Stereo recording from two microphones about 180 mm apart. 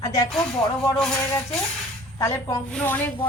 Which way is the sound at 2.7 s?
5° left (ahead or behind).